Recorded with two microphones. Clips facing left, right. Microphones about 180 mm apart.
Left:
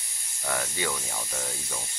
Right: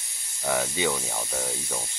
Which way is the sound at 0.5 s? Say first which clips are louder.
Right 5 dB; 15° right (ahead or behind).